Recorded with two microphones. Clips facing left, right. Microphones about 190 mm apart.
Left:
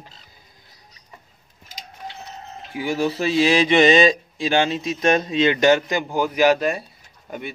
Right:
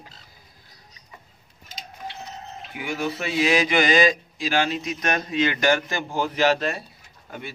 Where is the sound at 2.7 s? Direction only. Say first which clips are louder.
Left 6 dB; 30° left (ahead or behind).